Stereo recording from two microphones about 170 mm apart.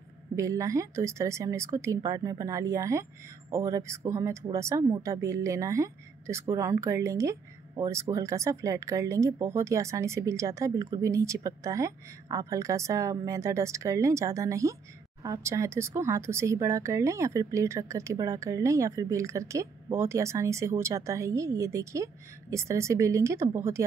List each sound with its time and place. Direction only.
0.4 s speech: 20° right (ahead or behind)